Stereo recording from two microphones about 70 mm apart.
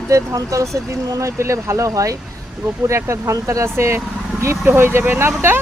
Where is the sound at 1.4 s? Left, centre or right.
Right.